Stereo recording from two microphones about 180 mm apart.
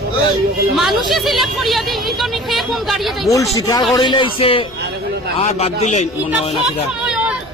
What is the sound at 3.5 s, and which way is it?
A man's voice, 20° left (ahead or behind).